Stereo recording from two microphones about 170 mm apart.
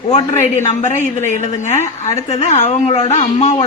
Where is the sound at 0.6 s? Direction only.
45° left (ahead or behind).